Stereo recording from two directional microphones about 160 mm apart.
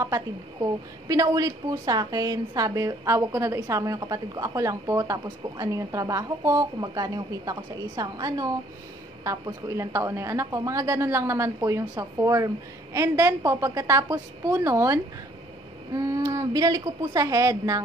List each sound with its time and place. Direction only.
0.0 s a woman's voice: 20° right (ahead or behind)